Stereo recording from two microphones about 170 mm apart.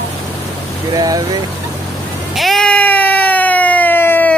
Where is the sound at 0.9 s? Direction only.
20° right (ahead or behind).